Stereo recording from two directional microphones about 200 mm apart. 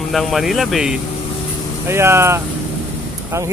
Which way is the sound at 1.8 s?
10° right (ahead or behind).